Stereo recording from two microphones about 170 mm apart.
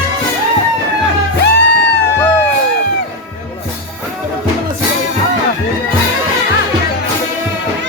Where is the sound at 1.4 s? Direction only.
90° left.